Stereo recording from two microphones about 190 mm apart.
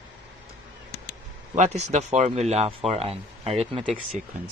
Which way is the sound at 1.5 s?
40° right (ahead or behind).